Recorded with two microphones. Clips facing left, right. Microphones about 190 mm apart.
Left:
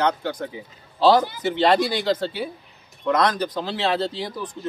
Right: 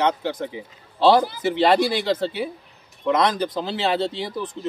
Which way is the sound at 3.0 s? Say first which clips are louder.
Right 1 dB; 25° right (ahead or behind).